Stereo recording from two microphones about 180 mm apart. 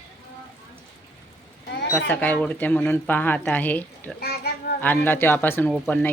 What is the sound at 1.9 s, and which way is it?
Speech, 10° left (ahead or behind).